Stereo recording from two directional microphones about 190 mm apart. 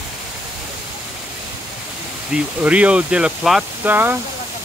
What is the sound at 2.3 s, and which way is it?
Speech, 5° right (ahead or behind).